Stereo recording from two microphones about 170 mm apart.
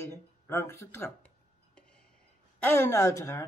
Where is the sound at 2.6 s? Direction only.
15° left (ahead or behind).